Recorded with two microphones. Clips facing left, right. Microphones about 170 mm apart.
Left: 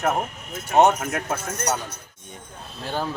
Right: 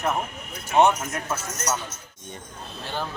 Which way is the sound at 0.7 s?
45° left (ahead or behind).